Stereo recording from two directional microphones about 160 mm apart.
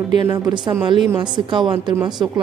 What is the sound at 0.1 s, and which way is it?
Speech, 25° right (ahead or behind).